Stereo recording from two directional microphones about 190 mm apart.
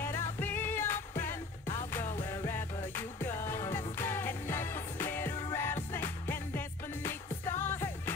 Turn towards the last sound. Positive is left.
turn(degrees=10)  # may be behind; listen again after turning